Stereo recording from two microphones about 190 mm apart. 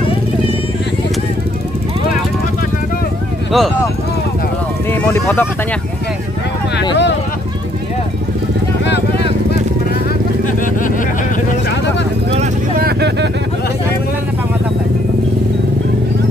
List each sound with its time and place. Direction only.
3.5 s speech: centre (ahead or behind)
5.0 s speech: 10° left (ahead or behind)
6.8 s speech: 65° left (ahead or behind)
8.8 s vehicle: 65° left (ahead or behind)
12.3 s vehicle: 40° right (ahead or behind)
12.8 s vehicle: 60° right (ahead or behind)